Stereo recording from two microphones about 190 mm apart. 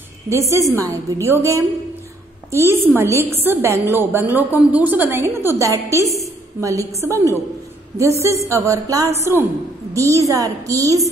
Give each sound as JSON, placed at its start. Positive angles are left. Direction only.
{"t": 0.3, "sound": "a woman's voice", "side_deg": -15}